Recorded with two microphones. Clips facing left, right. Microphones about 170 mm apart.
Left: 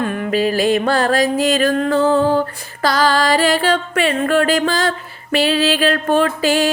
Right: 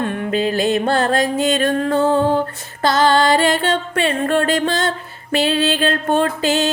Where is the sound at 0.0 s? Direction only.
30° right (ahead or behind).